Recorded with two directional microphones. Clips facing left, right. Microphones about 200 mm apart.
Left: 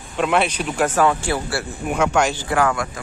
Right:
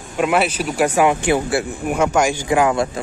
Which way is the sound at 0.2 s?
5° right (ahead or behind).